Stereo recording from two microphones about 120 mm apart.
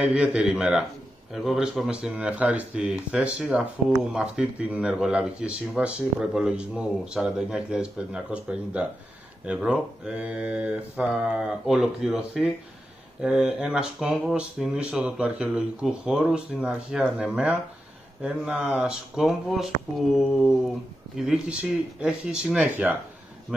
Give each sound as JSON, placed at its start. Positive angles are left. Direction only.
{"t": 0.0, "sound": "speech", "side_deg": -10}